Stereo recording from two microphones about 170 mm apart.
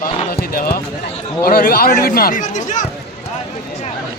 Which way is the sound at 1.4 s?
60° left (ahead or behind).